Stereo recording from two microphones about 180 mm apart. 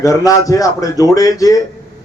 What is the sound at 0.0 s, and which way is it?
A man's voice, 20° left (ahead or behind).